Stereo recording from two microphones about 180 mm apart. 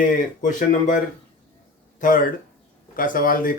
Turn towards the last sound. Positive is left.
turn(degrees=50)  # may be behind; listen again after turning